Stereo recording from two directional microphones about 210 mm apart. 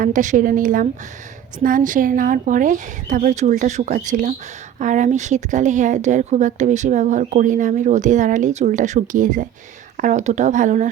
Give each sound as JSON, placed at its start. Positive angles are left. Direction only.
{"t": 0.0, "sound": "a woman's voice", "side_deg": -35}